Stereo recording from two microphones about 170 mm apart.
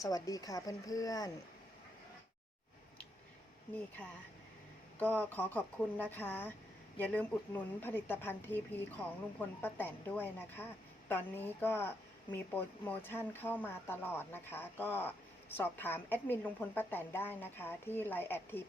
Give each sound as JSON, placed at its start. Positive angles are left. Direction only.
{"t": 0.0, "sound": "a woman's voice", "side_deg": 20}
{"t": 3.8, "sound": "a woman's voice", "side_deg": 10}